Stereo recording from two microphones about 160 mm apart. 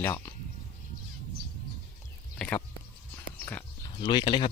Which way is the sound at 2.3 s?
5° left (ahead or behind).